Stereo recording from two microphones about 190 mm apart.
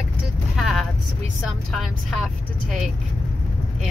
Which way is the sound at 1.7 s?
Centre (ahead or behind).